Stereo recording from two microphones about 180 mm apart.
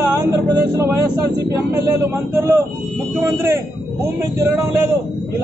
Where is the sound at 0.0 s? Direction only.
15° right (ahead or behind).